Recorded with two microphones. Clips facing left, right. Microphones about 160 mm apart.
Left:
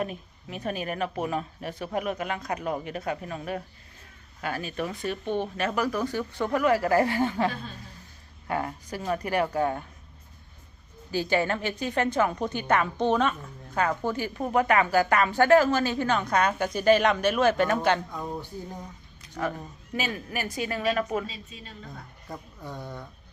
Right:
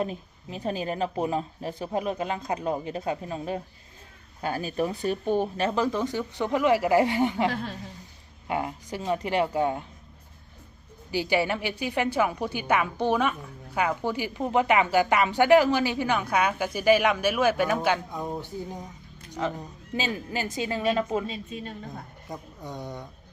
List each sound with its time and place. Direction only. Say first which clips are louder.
0.0 s a woman's voice: right 2 dB; 25° right (ahead or behind)
7.5 s a woman's voice: right 6 dB; 90° right
8.4 s a woman's voice: right 1 dB; 15° right (ahead or behind)
11.1 s a woman's voice: even; 15° right (ahead or behind)
18.1 s a woman's voice: right 2 dB; 15° right (ahead or behind)
21.2 s a woman's voice: right 7 dB; 50° right (ahead or behind)
22.3 s a woman's voice: right 1 dB; 15° right (ahead or behind)